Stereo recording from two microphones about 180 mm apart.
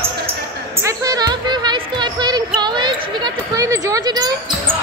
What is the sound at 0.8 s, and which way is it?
Music, 20° right (ahead or behind).